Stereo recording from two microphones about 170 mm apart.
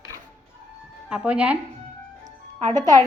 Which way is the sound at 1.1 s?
5° right (ahead or behind).